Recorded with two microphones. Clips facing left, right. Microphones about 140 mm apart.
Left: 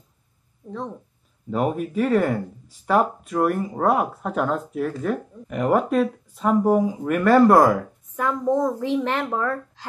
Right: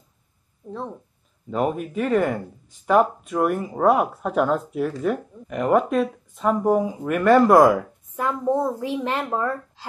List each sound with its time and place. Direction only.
0.7 s speech: 10° right (ahead or behind)
1.5 s a woman's voice: 5° left (ahead or behind); by 9.8 s 15° right (ahead or behind)